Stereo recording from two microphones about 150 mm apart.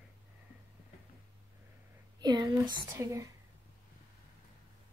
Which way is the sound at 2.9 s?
20° right (ahead or behind).